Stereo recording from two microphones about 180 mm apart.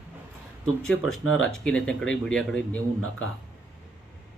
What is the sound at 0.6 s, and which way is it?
Speech, 5° left (ahead or behind).